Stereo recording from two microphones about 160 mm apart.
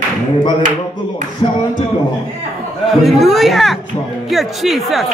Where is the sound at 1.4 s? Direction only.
35° left (ahead or behind).